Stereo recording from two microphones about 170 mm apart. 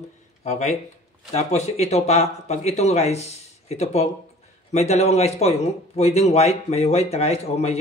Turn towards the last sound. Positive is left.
turn(degrees=40)  # may be behind; listen again after turning